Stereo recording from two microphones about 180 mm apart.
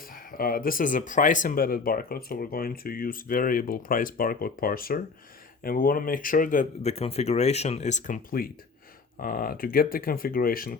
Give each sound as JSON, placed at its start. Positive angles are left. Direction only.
{"t": 0.0, "sound": "speech", "side_deg": 50}